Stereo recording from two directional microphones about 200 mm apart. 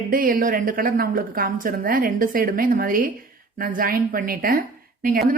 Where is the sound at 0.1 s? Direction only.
45° right (ahead or behind).